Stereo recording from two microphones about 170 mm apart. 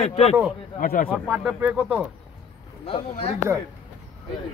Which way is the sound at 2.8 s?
30° left (ahead or behind).